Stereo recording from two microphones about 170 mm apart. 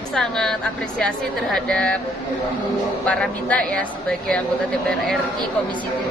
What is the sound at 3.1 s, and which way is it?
Speech, 5° left (ahead or behind).